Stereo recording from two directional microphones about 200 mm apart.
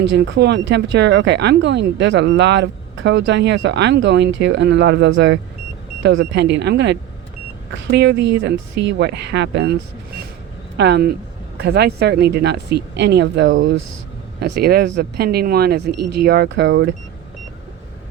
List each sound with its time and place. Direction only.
0.1 s speech: 60° right (ahead or behind)
10.8 s speech: 55° right (ahead or behind)
14.3 s speech: 50° right (ahead or behind)